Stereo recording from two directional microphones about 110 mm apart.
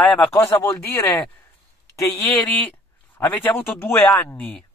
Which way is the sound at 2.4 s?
15° left (ahead or behind).